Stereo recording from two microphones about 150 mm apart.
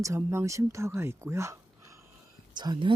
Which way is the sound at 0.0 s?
20° right (ahead or behind).